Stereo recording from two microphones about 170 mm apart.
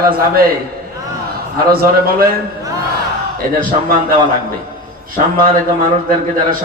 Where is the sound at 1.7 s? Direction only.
60° right (ahead or behind).